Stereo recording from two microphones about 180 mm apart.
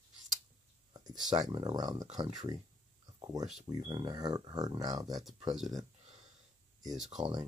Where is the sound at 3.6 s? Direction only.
25° right (ahead or behind).